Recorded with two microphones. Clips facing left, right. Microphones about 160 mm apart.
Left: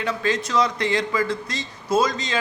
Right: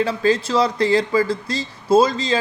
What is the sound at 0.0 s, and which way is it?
Speech, 30° right (ahead or behind).